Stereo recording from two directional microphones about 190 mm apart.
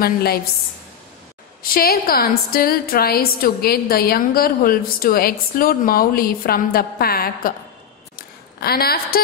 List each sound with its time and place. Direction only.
0.0 s a woman's voice: 55° left (ahead or behind)
1.6 s a woman's voice: 50° left (ahead or behind)
8.2 s a sound: 55° left (ahead or behind)